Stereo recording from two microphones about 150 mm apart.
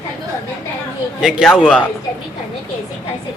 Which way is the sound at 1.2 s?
5° right (ahead or behind).